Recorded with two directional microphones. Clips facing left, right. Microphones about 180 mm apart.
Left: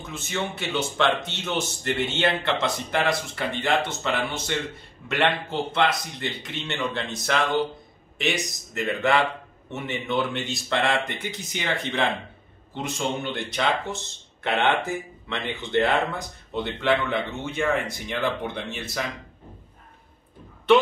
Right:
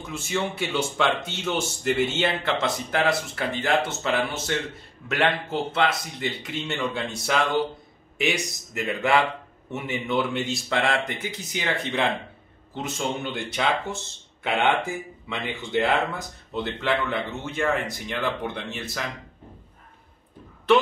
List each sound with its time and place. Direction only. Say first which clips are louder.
0.1 s a man's voice: right 2 dB; 10° right (ahead or behind)